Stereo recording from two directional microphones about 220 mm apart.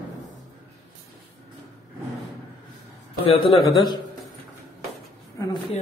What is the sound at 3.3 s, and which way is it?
Speech, 25° left (ahead or behind).